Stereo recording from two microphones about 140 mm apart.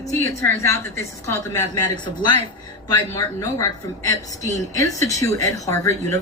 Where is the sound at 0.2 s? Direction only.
20° left (ahead or behind).